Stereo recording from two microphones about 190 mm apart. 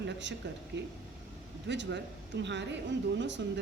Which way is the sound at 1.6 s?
70° right (ahead or behind).